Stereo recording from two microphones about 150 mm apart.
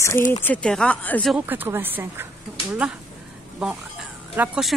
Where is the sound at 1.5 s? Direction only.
15° right (ahead or behind).